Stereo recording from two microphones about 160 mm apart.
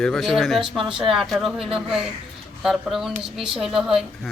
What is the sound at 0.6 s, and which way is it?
Speech, 30° right (ahead or behind).